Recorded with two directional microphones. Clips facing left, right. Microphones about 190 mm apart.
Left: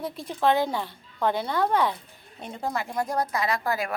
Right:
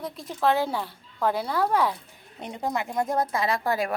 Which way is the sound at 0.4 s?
5° right (ahead or behind).